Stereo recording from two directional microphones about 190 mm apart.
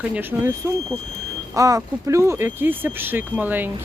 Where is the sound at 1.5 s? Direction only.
15° right (ahead or behind).